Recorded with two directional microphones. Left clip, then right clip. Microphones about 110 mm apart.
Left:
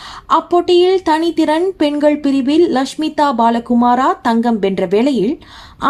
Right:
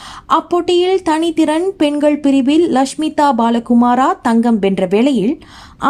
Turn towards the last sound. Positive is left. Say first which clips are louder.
# even
turn(degrees=-30)  # may be behind; listen again after turning